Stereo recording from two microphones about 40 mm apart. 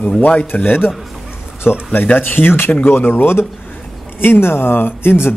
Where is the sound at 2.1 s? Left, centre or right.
Left.